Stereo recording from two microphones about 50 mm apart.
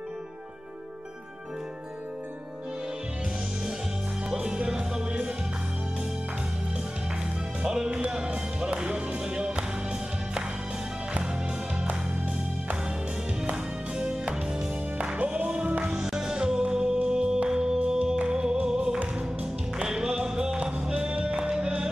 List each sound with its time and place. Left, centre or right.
4.3 s music: centre
7.6 s music: centre
13.9 s music: centre
15.8 s music: centre